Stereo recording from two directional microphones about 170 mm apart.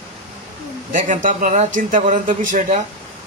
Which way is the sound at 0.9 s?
55° right (ahead or behind).